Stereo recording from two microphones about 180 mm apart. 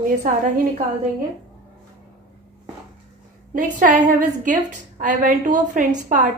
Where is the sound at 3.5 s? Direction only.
45° right (ahead or behind).